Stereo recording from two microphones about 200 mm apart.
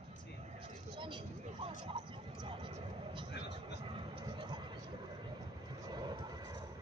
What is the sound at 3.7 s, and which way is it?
Vehicle, 25° right (ahead or behind).